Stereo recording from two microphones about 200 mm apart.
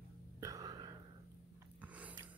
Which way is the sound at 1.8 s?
5° right (ahead or behind).